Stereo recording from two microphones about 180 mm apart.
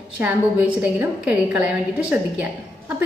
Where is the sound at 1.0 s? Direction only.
10° right (ahead or behind).